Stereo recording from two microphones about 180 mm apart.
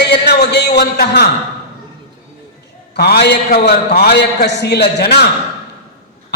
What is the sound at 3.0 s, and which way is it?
A man's voice, 65° left (ahead or behind).